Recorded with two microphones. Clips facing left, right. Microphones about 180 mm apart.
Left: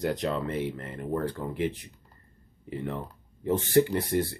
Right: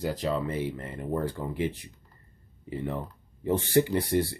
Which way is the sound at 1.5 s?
55° left (ahead or behind).